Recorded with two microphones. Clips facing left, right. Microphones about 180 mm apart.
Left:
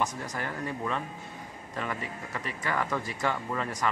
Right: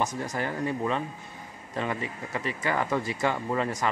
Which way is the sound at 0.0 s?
30° right (ahead or behind).